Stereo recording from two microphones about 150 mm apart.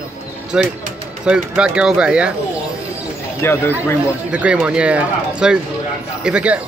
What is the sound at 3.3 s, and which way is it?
Speech, 15° left (ahead or behind).